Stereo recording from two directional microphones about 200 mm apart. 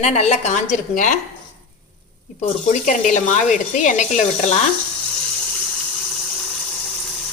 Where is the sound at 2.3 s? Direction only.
40° left (ahead or behind).